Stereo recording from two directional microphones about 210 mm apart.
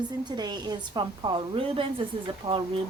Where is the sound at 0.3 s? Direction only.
20° right (ahead or behind).